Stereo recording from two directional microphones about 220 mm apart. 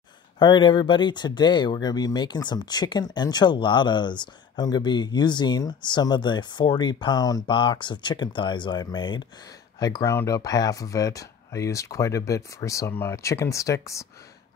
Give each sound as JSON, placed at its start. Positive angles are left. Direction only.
{"t": 0.4, "sound": "speech", "side_deg": 20}